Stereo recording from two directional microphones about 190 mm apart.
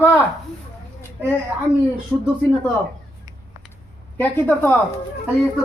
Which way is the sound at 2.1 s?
Centre (ahead or behind).